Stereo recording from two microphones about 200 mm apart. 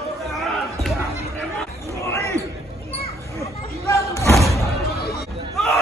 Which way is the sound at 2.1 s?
15° left (ahead or behind).